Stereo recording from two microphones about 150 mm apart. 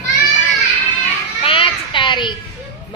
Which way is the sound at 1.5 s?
35° left (ahead or behind).